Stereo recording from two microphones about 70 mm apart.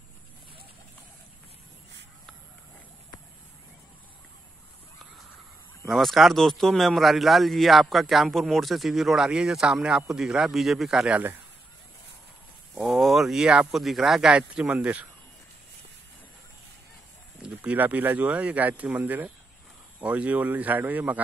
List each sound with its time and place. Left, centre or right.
5.9 s a man's voice: centre
12.7 s a sound: centre
13.7 s a man's voice: centre
14.3 s speech: centre
17.4 s speech: centre